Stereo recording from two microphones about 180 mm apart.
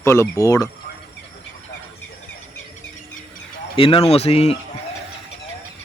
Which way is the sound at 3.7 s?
30° left (ahead or behind).